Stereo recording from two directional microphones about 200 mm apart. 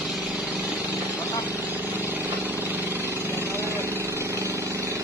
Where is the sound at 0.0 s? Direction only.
Centre (ahead or behind).